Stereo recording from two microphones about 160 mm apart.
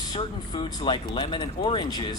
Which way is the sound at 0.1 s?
30° left (ahead or behind).